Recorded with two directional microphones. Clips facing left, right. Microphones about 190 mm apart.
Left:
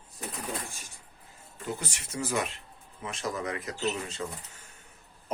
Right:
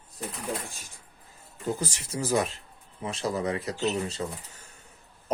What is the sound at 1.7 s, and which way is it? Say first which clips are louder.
Speech: right 4 dB; 35° right (ahead or behind).